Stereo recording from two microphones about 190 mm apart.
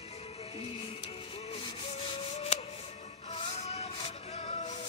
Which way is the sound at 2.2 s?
35° left (ahead or behind).